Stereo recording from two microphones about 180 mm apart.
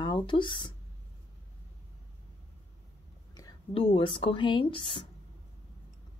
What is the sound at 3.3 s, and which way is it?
Speech, 25° left (ahead or behind).